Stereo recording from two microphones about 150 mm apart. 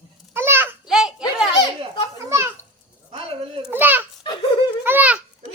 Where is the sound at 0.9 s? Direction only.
5° right (ahead or behind).